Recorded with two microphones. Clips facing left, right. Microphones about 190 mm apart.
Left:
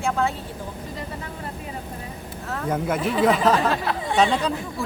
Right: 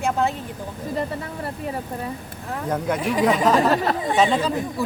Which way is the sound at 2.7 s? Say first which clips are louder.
Right 1 dB; 5° left (ahead or behind).